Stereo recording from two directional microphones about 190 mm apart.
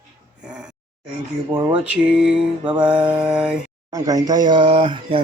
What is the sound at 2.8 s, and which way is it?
Mantra, 5° right (ahead or behind).